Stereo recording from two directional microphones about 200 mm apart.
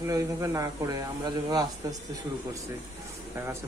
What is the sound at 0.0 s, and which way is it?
A man's voice, 15° right (ahead or behind).